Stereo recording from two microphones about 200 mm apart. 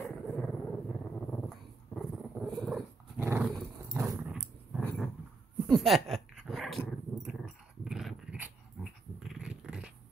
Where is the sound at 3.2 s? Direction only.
10° right (ahead or behind).